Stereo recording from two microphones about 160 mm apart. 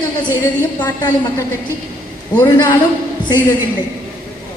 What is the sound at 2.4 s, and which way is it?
Speech, 25° left (ahead or behind).